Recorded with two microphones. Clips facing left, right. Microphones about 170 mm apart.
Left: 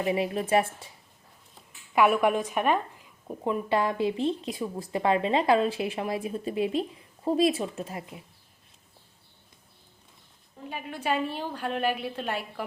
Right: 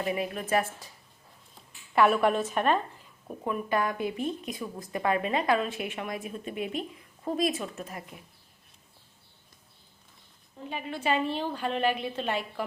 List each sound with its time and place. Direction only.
0.0 s a woman's voice: 25° left (ahead or behind)
1.9 s a woman's voice: 10° left (ahead or behind)
3.2 s a woman's voice: 25° left (ahead or behind)
10.7 s a woman's voice: 5° left (ahead or behind)